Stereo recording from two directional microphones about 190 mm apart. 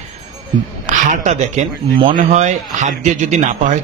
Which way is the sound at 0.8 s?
40° right (ahead or behind).